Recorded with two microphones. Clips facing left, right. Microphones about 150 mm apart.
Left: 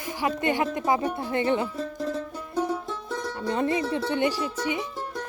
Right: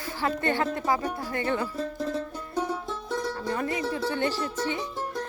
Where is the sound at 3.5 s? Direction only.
25° left (ahead or behind).